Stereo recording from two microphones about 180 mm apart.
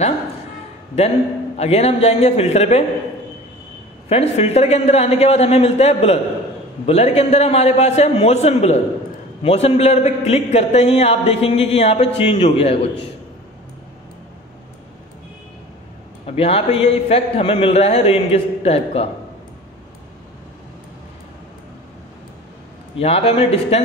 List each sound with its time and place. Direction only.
1.6 s a man's voice: 35° left (ahead or behind)
4.1 s a man's voice: 35° left (ahead or behind)
16.3 s a man's voice: 35° left (ahead or behind)
22.9 s a man's voice: 35° left (ahead or behind)